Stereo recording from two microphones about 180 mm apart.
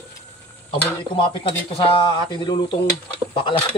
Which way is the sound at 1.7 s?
25° left (ahead or behind).